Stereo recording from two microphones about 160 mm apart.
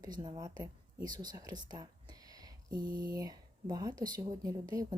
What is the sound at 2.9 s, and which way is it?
Speech, 65° right (ahead or behind).